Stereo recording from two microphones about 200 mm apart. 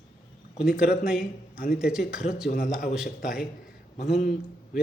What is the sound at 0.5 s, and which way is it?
Speech, 50° left (ahead or behind).